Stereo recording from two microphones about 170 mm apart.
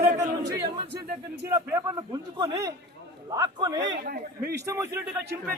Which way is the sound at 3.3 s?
20° right (ahead or behind).